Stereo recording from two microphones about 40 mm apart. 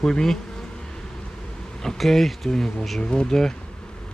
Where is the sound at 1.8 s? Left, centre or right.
Centre.